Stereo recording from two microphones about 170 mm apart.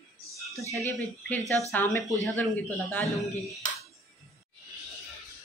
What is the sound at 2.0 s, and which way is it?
Speech, centre (ahead or behind).